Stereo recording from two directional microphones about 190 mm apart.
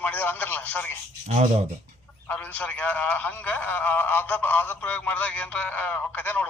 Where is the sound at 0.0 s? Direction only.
10° left (ahead or behind).